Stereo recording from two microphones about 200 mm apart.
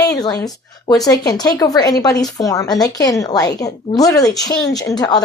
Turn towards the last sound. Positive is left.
turn(degrees=20)  # may be behind; listen again after turning